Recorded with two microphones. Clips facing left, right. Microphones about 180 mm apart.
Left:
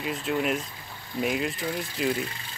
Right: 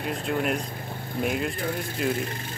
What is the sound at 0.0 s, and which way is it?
Speech, 45° right (ahead or behind).